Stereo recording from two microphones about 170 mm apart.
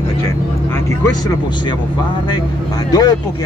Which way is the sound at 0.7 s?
15° left (ahead or behind).